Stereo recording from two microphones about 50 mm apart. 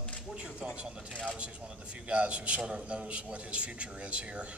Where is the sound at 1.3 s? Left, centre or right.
Right.